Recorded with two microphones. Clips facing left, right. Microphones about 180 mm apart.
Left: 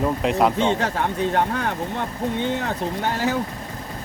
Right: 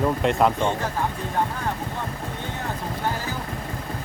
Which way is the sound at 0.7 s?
75° left (ahead or behind).